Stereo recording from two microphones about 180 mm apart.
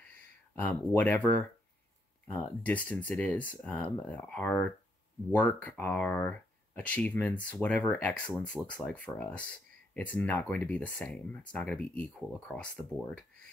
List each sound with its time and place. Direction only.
0.6 s speech: 10° left (ahead or behind)
2.2 s speech: 10° left (ahead or behind)